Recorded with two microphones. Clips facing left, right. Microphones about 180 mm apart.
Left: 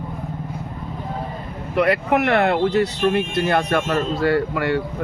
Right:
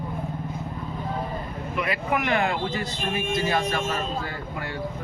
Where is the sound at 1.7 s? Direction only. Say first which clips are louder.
Left 9 dB; 75° left (ahead or behind).